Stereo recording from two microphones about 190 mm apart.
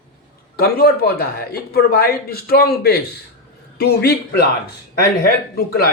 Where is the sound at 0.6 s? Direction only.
55° left (ahead or behind).